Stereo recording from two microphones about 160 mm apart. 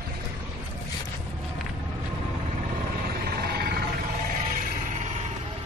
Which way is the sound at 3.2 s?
75° right (ahead or behind).